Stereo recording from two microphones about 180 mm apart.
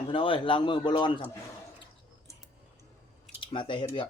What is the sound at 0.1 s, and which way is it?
Speech, 30° left (ahead or behind).